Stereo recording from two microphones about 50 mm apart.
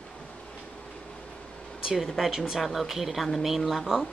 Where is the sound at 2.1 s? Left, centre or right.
Centre.